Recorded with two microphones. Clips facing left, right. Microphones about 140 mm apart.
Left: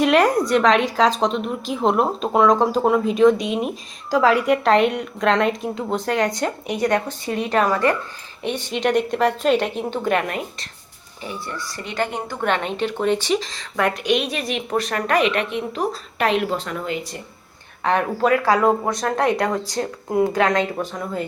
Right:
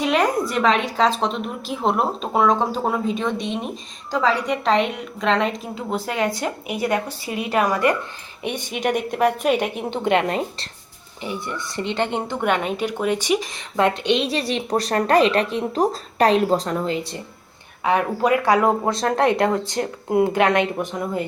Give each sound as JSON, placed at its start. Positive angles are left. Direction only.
{"t": 0.0, "sound": "a woman's voice", "side_deg": 0}
{"t": 12.4, "sound": "speech", "side_deg": -10}
{"t": 17.8, "sound": "a woman's voice", "side_deg": -5}
{"t": 18.3, "sound": "a woman's voice", "side_deg": -20}